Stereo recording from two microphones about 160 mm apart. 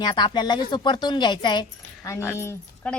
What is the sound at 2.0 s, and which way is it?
Speech, 15° left (ahead or behind).